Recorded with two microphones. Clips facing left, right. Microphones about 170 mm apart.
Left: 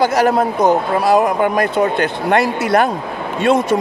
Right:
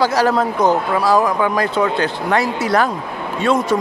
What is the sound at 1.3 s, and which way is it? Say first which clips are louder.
Speech: left 2 dB; 50° left (ahead or behind).